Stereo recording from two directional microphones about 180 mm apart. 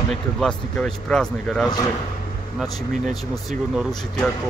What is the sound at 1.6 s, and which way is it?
Speech, 20° left (ahead or behind).